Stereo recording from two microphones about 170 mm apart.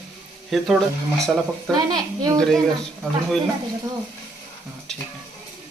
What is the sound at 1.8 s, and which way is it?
Speech, 25° right (ahead or behind).